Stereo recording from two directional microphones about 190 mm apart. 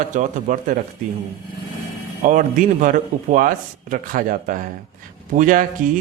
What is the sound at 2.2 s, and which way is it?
A man's voice, 45° right (ahead or behind).